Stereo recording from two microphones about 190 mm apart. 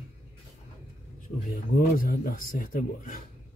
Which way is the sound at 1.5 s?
50° left (ahead or behind).